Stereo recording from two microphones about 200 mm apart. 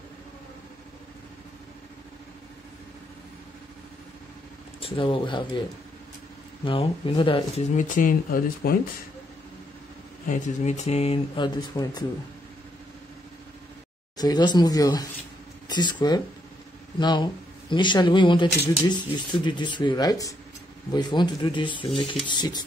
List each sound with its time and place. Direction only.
4.7 s speech: 25° left (ahead or behind)
6.6 s speech: 25° left (ahead or behind)
7.7 s speech: 40° left (ahead or behind)
10.2 s speech: 40° left (ahead or behind); by 12.0 s 20° left (ahead or behind)
14.1 s speech: 20° left (ahead or behind)